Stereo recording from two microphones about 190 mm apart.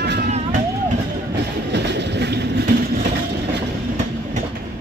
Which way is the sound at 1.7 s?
65° right (ahead or behind).